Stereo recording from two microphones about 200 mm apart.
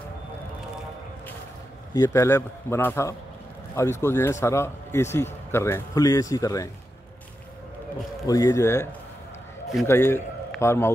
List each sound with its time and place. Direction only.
2.0 s a man's voice: 15° left (ahead or behind)
8.3 s a man's voice: 15° left (ahead or behind)
9.8 s a man's voice: 15° left (ahead or behind)